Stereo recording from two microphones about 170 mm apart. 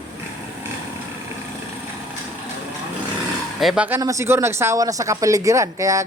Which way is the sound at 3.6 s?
5° right (ahead or behind).